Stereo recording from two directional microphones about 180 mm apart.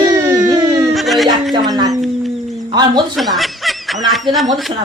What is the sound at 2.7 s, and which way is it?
Speech, 25° right (ahead or behind).